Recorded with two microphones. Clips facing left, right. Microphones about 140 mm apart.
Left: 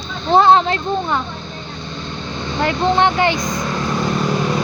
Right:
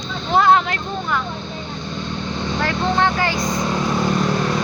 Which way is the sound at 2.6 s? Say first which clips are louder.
Left 4 dB; 20° left (ahead or behind).